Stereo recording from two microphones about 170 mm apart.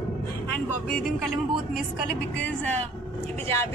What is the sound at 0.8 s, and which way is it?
A woman's voice, 5° left (ahead or behind).